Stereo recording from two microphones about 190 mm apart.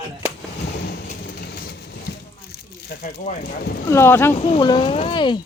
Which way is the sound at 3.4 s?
60° left (ahead or behind).